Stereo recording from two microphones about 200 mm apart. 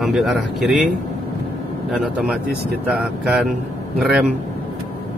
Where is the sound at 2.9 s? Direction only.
5° right (ahead or behind).